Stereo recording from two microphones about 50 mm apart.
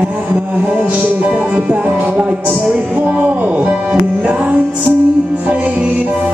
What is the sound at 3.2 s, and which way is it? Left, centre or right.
Speech, right.